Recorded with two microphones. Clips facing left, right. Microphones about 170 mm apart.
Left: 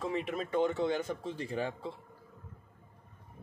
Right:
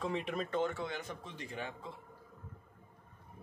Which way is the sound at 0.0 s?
Centre (ahead or behind).